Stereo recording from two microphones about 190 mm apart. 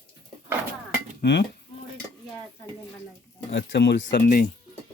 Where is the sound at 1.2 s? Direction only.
65° left (ahead or behind).